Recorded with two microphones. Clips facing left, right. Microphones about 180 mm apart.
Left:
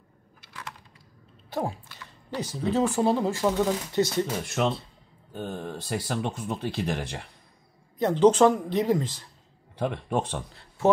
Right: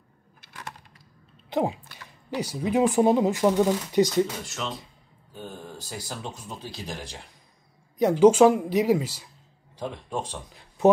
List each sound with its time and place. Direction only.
1.5 s speech: 20° right (ahead or behind)
5.3 s speech: 60° left (ahead or behind)
8.0 s speech: 10° right (ahead or behind)
9.8 s speech: 60° left (ahead or behind)
10.8 s speech: 20° right (ahead or behind)